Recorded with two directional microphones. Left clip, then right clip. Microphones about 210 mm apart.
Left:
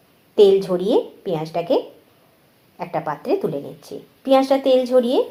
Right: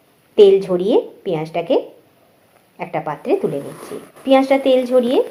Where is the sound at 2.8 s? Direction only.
30° right (ahead or behind).